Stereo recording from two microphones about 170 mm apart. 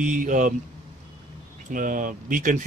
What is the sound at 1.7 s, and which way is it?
Speech, 50° right (ahead or behind).